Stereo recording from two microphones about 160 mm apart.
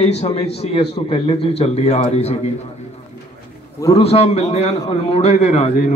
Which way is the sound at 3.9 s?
40° left (ahead or behind).